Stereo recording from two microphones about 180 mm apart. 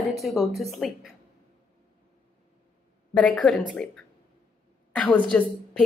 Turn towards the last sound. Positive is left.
turn(degrees=5)  # may be behind; listen again after turning